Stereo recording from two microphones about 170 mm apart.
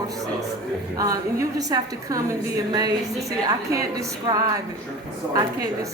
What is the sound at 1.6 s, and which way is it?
A woman's voice, 20° right (ahead or behind).